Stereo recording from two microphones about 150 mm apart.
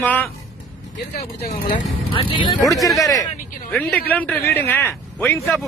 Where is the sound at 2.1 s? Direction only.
35° left (ahead or behind).